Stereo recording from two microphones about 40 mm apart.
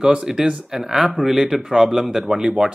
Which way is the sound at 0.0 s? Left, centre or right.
Centre.